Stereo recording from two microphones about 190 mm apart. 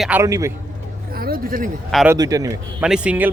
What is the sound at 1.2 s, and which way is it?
Speech, 50° right (ahead or behind).